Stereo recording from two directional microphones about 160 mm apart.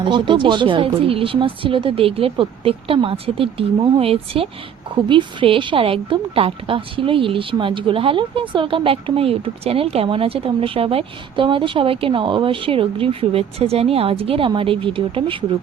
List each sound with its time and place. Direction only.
0.0 s a woman's voice: 30° right (ahead or behind)